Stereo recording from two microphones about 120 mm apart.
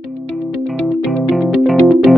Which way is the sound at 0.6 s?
Centre (ahead or behind).